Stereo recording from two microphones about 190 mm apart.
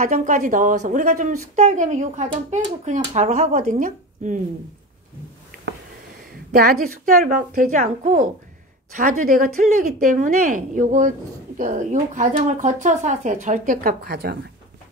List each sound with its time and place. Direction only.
0.0 s speech: 40° right (ahead or behind)
6.5 s speech: 50° right (ahead or behind)
9.3 s speech: 45° right (ahead or behind)